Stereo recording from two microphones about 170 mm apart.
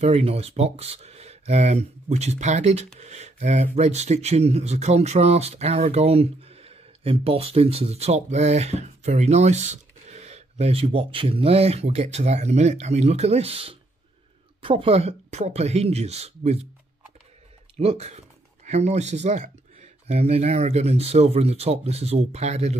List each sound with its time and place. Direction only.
0.0 s speech: 35° right (ahead or behind)
17.7 s speech: 40° right (ahead or behind)